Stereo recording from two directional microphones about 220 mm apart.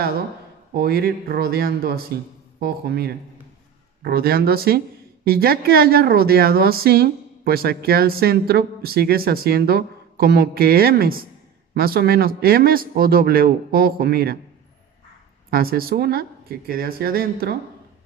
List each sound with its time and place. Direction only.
0.7 s a woman's voice: 45° right (ahead or behind)
15.5 s a woman's voice: 45° right (ahead or behind)